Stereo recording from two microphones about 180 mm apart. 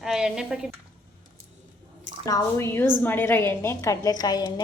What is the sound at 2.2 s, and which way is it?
A woman's voice, 15° left (ahead or behind).